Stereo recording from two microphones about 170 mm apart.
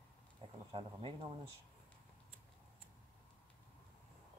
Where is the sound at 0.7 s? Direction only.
30° right (ahead or behind).